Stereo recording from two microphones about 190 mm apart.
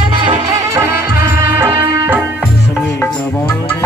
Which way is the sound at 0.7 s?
15° right (ahead or behind).